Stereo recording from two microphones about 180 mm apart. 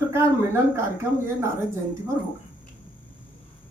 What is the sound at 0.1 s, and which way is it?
A woman's voice, 15° right (ahead or behind).